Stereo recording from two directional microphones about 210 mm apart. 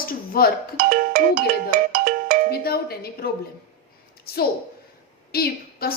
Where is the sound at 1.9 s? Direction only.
40° right (ahead or behind).